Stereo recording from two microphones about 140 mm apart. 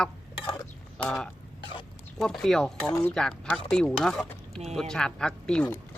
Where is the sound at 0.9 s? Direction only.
5° left (ahead or behind).